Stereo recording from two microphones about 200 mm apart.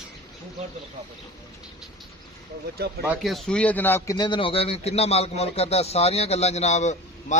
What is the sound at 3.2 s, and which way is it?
A man's voice, centre (ahead or behind).